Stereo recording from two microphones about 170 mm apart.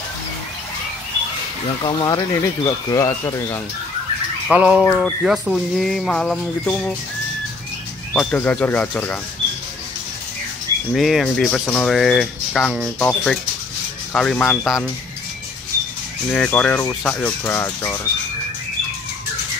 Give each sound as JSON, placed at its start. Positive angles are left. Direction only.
{"t": 1.8, "sound": "speech", "side_deg": 25}
{"t": 4.5, "sound": "speech", "side_deg": -5}
{"t": 8.1, "sound": "speech", "side_deg": 5}
{"t": 10.9, "sound": "speech", "side_deg": 0}
{"t": 16.3, "sound": "speech", "side_deg": 10}